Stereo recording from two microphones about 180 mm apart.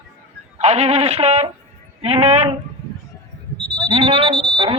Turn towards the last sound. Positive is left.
turn(degrees=-30)  # may be behind; listen again after turning